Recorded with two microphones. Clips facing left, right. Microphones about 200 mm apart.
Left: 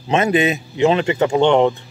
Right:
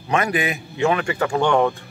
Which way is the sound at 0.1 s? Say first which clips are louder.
Left 5 dB; 25° left (ahead or behind).